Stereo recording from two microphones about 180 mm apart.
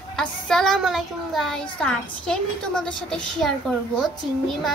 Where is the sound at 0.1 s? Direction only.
Centre (ahead or behind).